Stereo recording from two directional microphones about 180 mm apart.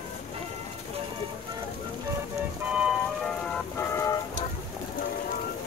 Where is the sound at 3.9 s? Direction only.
15° left (ahead or behind).